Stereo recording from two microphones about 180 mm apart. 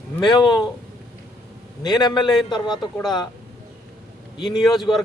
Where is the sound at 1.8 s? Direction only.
25° left (ahead or behind).